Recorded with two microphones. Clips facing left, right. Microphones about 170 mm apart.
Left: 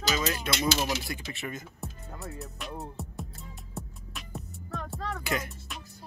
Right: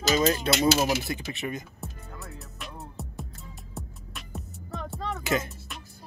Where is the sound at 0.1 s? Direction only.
35° right (ahead or behind).